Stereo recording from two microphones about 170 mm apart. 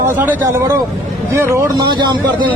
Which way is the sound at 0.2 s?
10° right (ahead or behind).